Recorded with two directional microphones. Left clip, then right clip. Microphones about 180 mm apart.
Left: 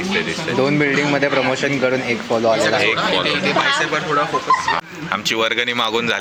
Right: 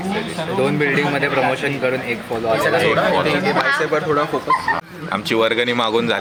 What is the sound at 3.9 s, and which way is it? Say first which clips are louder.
Speech: even; 65° right (ahead or behind).